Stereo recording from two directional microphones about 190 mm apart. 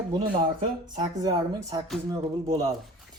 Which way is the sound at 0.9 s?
20° right (ahead or behind).